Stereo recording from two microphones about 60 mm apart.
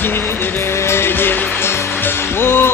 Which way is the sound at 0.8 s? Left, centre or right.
Left.